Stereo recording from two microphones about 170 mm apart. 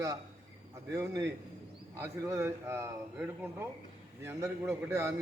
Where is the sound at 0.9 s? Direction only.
15° right (ahead or behind).